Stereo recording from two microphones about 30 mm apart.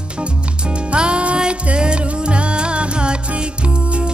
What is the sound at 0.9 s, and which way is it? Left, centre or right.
Music, right.